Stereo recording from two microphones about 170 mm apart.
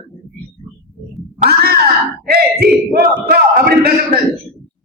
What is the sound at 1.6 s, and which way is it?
Grunt, 65° right (ahead or behind).